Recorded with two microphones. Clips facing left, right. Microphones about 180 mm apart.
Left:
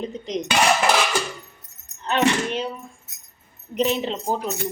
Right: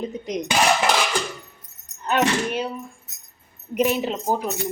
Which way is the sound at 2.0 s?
10° right (ahead or behind).